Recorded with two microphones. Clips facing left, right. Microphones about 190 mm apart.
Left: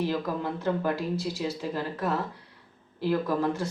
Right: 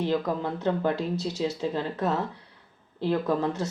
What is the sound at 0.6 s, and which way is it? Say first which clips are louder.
Speech: right 2 dB; 25° right (ahead or behind).